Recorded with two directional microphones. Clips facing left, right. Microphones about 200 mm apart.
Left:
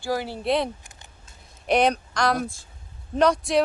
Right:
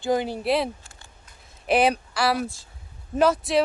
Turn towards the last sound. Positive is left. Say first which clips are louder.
# even
turn(degrees=-5)  # may be behind; listen again after turning